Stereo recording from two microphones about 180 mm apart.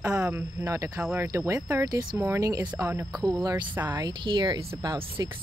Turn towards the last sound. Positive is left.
turn(degrees=-20)  # may be behind; listen again after turning